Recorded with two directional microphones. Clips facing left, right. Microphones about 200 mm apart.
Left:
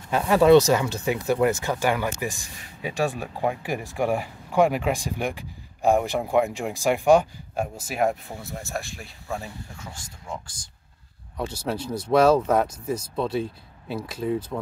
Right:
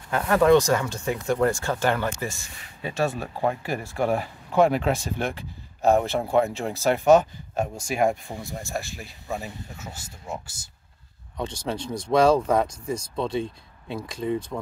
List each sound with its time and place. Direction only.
0.3 s speech: 20° left (ahead or behind)
1.2 s speech: 5° left (ahead or behind)
10.3 s speech: 5° right (ahead or behind)
11.3 s speech: 5° left (ahead or behind)